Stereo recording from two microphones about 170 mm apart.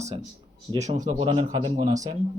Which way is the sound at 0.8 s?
45° right (ahead or behind).